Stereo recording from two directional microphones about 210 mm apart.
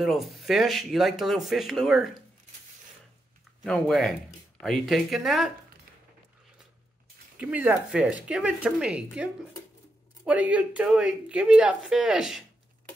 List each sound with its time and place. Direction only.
0.0 s speech: centre (ahead or behind)
3.6 s speech: 5° left (ahead or behind)
7.3 s speech: 5° right (ahead or behind)